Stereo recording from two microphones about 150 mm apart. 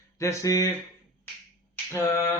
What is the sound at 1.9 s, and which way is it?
Speech, 20° left (ahead or behind).